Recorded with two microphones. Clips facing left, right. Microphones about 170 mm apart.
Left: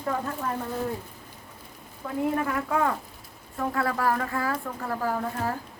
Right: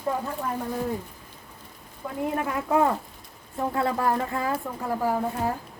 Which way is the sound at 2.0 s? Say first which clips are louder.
Left 1 dB; 10° right (ahead or behind).